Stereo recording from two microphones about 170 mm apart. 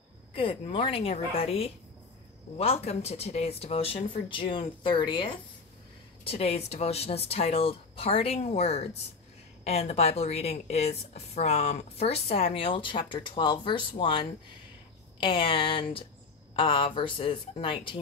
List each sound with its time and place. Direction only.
0.3 s speech: 30° left (ahead or behind)